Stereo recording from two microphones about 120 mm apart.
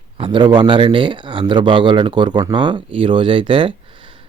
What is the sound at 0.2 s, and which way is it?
Speech, 40° right (ahead or behind).